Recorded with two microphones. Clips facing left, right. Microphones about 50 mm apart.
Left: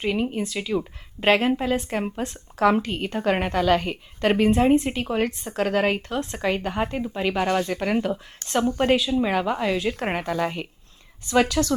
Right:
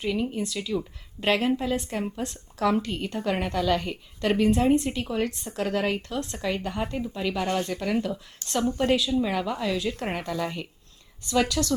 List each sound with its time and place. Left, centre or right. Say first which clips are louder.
0.0 s a woman's voice: left 3 dB; left